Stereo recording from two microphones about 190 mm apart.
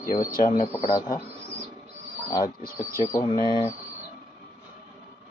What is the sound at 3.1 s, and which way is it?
Speech, 25° left (ahead or behind).